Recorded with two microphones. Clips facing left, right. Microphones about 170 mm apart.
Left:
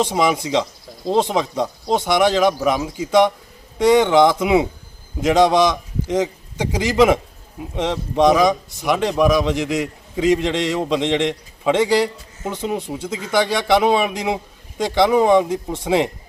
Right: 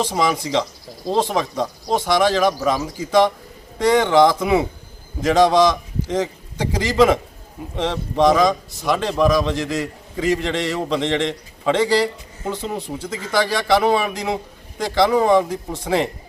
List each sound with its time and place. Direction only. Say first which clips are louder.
0.0 s a man's voice: left 2 dB; 15° left (ahead or behind)